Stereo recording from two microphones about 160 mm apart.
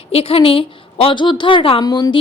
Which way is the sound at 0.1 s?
35° left (ahead or behind).